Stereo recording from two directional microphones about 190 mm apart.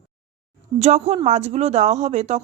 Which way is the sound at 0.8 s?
35° right (ahead or behind).